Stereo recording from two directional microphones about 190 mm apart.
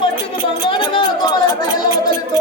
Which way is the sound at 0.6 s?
25° left (ahead or behind).